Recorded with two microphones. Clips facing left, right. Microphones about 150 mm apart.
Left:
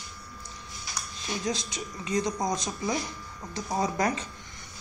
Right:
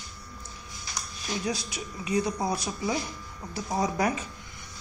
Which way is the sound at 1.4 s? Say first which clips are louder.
Left 1 dB; 10° right (ahead or behind).